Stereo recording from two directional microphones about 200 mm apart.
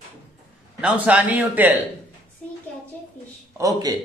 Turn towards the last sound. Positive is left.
turn(degrees=-15)  # may be behind; listen again after turning